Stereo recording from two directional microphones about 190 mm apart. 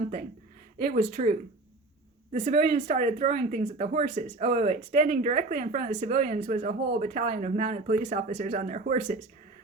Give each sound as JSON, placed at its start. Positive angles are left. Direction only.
{"t": 0.8, "sound": "speech", "side_deg": -45}